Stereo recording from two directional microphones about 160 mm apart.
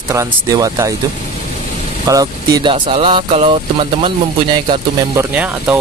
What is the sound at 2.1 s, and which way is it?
Speech, 20° right (ahead or behind).